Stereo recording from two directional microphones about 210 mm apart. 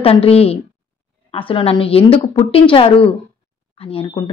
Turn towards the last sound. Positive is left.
turn(degrees=25)  # may be behind; listen again after turning